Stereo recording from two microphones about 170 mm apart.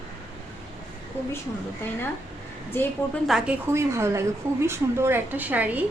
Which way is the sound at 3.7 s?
15° right (ahead or behind).